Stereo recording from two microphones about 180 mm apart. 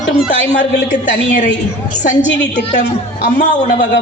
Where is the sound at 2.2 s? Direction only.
80° left.